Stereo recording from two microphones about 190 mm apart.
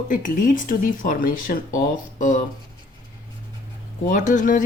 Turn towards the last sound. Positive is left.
turn(degrees=40)  # may be behind; listen again after turning